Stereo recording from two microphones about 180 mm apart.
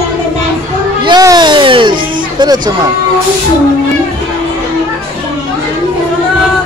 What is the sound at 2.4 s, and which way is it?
Speech, 25° right (ahead or behind).